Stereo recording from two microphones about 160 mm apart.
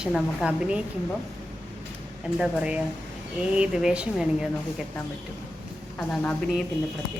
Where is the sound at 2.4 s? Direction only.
5° right (ahead or behind).